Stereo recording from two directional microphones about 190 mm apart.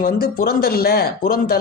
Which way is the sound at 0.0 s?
50° left (ahead or behind).